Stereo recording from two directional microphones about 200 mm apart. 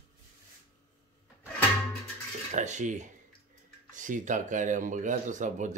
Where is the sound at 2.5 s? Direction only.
35° right (ahead or behind).